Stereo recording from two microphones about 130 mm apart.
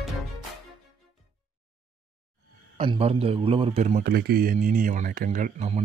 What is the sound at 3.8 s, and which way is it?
Speech, 90° right.